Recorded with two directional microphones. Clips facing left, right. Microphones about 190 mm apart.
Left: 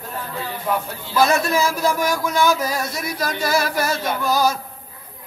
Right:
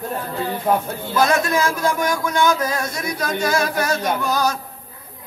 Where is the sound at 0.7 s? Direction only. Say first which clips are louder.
Right 4 dB; 45° right (ahead or behind).